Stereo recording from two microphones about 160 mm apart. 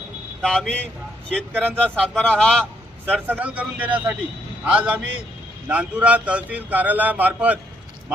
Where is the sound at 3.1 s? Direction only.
10° right (ahead or behind).